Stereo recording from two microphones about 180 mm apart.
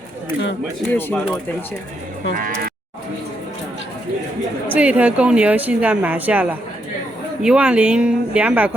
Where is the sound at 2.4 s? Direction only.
50° right (ahead or behind).